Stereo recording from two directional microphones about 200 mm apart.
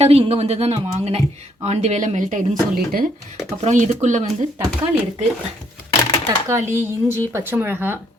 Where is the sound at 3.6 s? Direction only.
35° right (ahead or behind).